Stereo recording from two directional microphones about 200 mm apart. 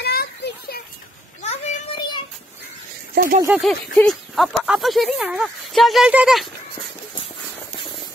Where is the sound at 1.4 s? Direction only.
30° left (ahead or behind).